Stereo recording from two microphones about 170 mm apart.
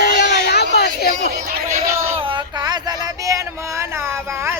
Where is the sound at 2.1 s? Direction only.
30° right (ahead or behind).